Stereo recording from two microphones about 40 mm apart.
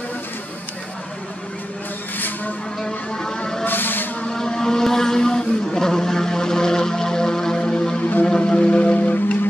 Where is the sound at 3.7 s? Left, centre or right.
Left.